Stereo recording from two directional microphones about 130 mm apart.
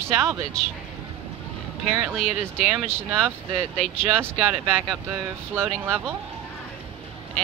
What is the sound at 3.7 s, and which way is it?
Speech, 10° left (ahead or behind).